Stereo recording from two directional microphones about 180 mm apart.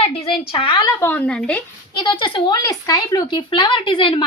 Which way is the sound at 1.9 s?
25° left (ahead or behind).